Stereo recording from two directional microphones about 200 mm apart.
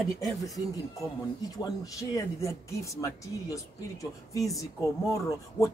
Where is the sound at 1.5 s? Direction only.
20° left (ahead or behind).